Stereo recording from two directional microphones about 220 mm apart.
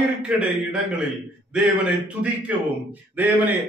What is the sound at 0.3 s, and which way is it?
Speech, 5° right (ahead or behind).